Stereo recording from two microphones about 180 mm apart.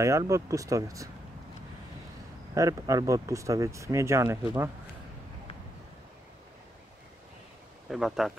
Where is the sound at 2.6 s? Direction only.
20° right (ahead or behind).